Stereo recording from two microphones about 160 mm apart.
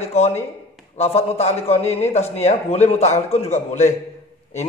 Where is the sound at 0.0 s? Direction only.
40° left (ahead or behind).